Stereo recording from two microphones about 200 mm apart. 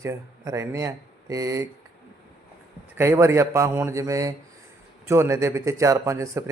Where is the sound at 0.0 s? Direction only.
15° right (ahead or behind).